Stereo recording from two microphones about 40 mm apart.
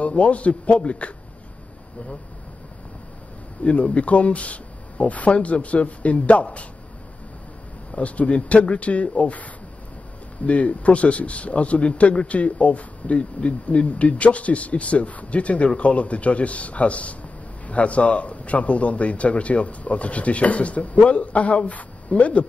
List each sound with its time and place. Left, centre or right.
0.0 s a man's voice: left
3.6 s a man's voice: left
7.9 s a man's voice: left